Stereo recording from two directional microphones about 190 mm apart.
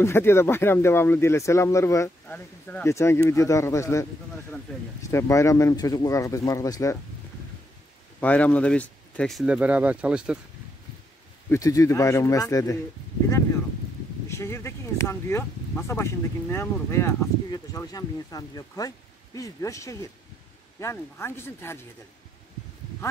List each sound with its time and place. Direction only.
0.0 s speech: 15° left (ahead or behind)
8.2 s speech: 5° left (ahead or behind)
11.5 s speech: 15° left (ahead or behind)
14.3 s speech: 15° left (ahead or behind)